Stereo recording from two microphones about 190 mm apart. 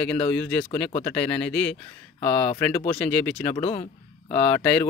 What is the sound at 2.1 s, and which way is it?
Speech, 30° left (ahead or behind).